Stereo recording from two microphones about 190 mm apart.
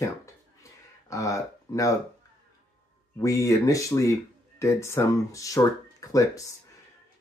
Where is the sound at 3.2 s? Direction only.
15° left (ahead or behind).